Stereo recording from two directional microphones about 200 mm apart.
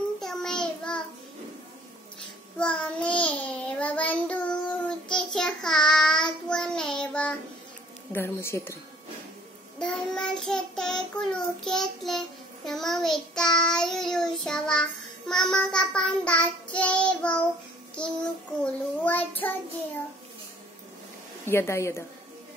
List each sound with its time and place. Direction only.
0.2 s child singing: centre (ahead or behind)
2.6 s child singing: 5° left (ahead or behind)
8.1 s a woman's voice: 10° left (ahead or behind)
9.8 s child singing: 5° left (ahead or behind)
18.6 s a child's voice: 10° left (ahead or behind)
21.5 s a woman's voice: 15° left (ahead or behind)